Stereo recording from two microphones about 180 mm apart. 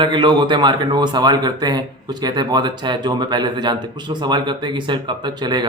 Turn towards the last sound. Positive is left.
turn(degrees=-25)  # may be behind; listen again after turning